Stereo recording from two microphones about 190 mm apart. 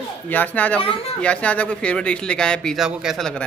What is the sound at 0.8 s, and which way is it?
Speech, 30° left (ahead or behind).